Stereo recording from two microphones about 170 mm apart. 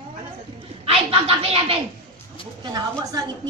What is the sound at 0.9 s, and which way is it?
Speech, 35° right (ahead or behind).